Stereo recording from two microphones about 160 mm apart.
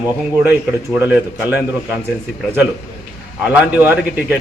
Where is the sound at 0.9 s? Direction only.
10° right (ahead or behind).